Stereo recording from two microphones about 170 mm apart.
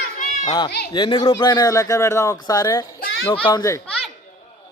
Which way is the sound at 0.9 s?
30° left (ahead or behind).